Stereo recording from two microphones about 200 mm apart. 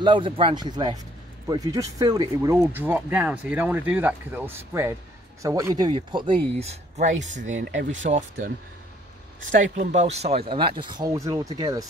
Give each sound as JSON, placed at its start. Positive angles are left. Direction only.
{"t": 0.0, "sound": "speech", "side_deg": -25}
{"t": 7.6, "sound": "speech", "side_deg": -65}
{"t": 8.0, "sound": "speech", "side_deg": -40}